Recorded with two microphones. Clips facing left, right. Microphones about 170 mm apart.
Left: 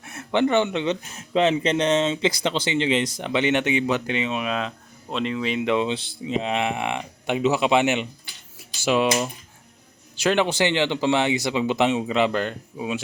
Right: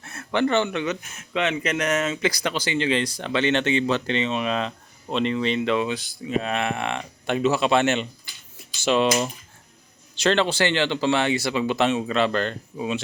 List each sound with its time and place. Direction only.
0.0 s speech: 15° left (ahead or behind)
1.1 s speech: 35° left (ahead or behind); by 8.0 s 15° left (ahead or behind)
8.5 s a sound: 10° left (ahead or behind)
10.2 s speech: 10° left (ahead or behind)